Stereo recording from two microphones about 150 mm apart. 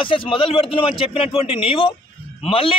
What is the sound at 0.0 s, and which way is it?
A man's voice, 35° left (ahead or behind).